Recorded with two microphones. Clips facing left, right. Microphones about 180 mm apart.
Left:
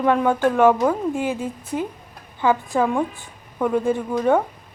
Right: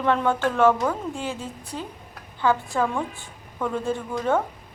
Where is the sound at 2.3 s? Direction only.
15° left (ahead or behind).